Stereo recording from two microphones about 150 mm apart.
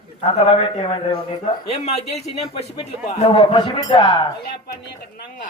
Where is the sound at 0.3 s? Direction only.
35° left (ahead or behind).